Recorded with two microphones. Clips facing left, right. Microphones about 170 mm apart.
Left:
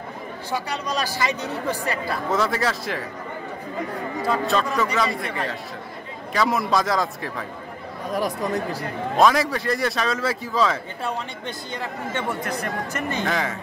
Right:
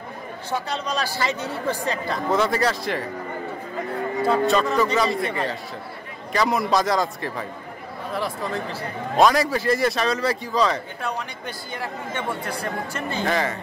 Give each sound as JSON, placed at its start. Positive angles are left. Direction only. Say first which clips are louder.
{"t": 0.5, "sound": "speech", "louder": "right 1 dB", "side_deg": 10}
{"t": 1.9, "sound": "a man's voice", "louder": "right 2 dB", "side_deg": 5}
{"t": 4.3, "sound": "a man's voice", "louder": "right 2 dB", "side_deg": 0}
{"t": 8.1, "sound": "speech", "louder": "left 3 dB", "side_deg": 15}
{"t": 9.1, "sound": "a man's voice", "louder": "right 1 dB", "side_deg": 0}
{"t": 11.0, "sound": "speech", "louder": "left 1 dB", "side_deg": 25}
{"t": 11.8, "sound": "speech", "louder": "left 1 dB", "side_deg": -15}
{"t": 13.2, "sound": "a man's voice", "louder": "right 4 dB", "side_deg": 0}